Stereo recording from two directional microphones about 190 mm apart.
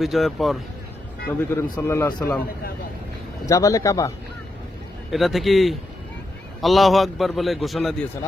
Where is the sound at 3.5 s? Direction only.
15° left (ahead or behind).